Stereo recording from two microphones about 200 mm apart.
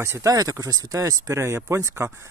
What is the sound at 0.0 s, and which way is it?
Speech, 15° right (ahead or behind).